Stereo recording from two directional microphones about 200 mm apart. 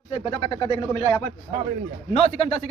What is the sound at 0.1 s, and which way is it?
Speech, 25° left (ahead or behind).